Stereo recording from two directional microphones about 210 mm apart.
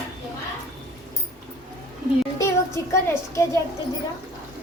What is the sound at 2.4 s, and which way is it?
Speech, 15° left (ahead or behind).